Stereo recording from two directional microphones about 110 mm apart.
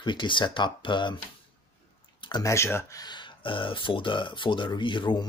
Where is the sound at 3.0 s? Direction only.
45° left (ahead or behind).